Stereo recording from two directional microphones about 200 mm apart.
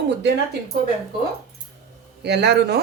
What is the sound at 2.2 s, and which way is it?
Speech, 60° right (ahead or behind).